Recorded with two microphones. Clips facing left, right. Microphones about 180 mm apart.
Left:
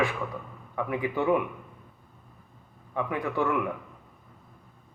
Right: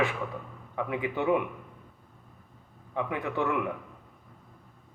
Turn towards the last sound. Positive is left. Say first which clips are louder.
# left 2 dB
turn(degrees=-20)  # may be behind; listen again after turning